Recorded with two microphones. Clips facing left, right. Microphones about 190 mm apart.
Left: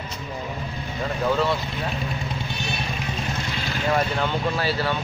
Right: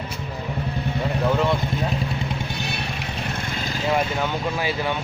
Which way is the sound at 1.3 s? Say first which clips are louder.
Even; 15° right (ahead or behind).